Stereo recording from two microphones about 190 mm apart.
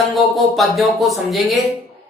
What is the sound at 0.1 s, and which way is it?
A man's voice, centre (ahead or behind).